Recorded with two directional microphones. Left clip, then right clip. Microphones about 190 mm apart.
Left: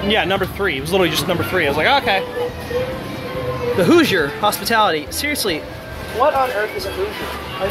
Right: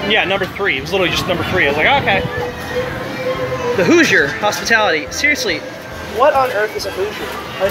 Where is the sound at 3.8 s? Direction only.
20° left (ahead or behind).